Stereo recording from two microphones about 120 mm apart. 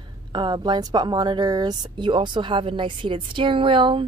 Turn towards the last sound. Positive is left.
turn(degrees=-45)  # may be behind; listen again after turning